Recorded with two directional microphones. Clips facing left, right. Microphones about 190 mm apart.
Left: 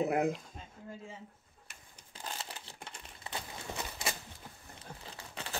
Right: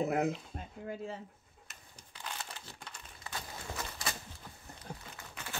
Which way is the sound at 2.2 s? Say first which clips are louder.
Left 1 dB; 30° left (ahead or behind).